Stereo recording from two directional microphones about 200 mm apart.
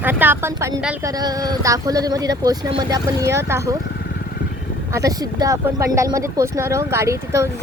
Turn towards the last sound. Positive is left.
turn(degrees=-15)  # may be behind; listen again after turning